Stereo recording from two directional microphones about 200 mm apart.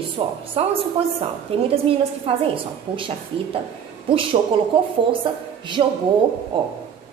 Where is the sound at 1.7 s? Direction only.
30° right (ahead or behind).